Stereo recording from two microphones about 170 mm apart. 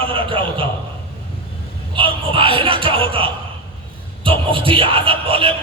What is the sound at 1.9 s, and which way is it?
Music, 30° right (ahead or behind).